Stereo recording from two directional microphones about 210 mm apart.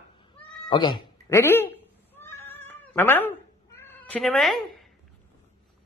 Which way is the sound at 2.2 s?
10° left (ahead or behind).